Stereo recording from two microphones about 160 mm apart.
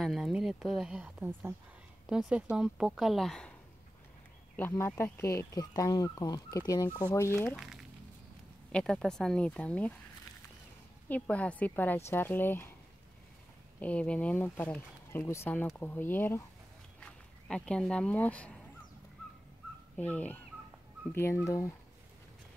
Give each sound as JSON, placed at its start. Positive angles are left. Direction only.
{"t": 0.0, "sound": "speech", "side_deg": 0}
{"t": 4.6, "sound": "speech", "side_deg": 15}
{"t": 7.4, "sound": "speech", "side_deg": 0}
{"t": 11.1, "sound": "speech", "side_deg": 10}
{"t": 13.7, "sound": "speech", "side_deg": 10}
{"t": 20.0, "sound": "speech", "side_deg": 10}